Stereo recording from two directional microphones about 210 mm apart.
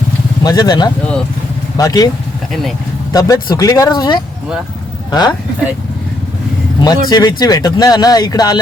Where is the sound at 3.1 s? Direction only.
15° left (ahead or behind).